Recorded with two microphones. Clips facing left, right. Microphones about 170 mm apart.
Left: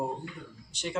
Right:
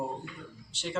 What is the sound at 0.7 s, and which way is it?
Speech, 15° left (ahead or behind).